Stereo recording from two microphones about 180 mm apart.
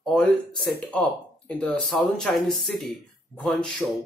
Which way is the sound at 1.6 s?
5° left (ahead or behind).